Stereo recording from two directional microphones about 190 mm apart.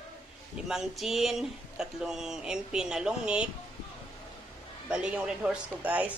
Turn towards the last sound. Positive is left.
turn(degrees=-10)  # may be behind; listen again after turning